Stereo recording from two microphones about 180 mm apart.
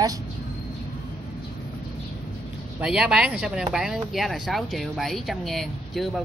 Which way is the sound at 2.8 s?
5° right (ahead or behind).